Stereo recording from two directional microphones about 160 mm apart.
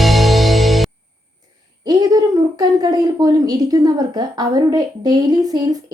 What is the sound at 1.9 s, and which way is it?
A woman's voice, 25° right (ahead or behind).